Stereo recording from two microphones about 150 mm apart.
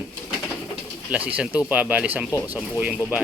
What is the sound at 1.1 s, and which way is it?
Speech, 10° right (ahead or behind).